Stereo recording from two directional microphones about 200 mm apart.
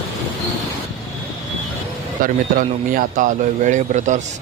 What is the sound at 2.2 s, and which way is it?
A man's voice, 45° right (ahead or behind).